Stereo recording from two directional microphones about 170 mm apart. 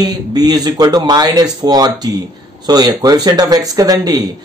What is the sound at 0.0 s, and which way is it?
Speech, 25° right (ahead or behind).